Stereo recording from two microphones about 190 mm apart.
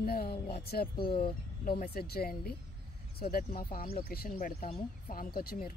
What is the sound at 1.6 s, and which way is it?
Speech, 50° left (ahead or behind).